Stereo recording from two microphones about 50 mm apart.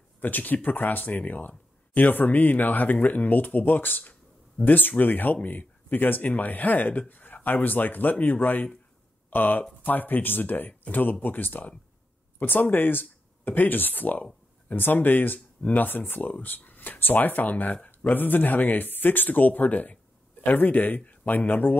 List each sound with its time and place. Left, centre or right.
0.2 s speech: left